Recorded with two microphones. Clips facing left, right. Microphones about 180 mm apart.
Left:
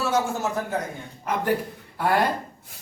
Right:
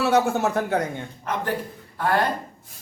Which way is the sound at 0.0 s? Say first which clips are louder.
Right 4 dB; 65° right (ahead or behind).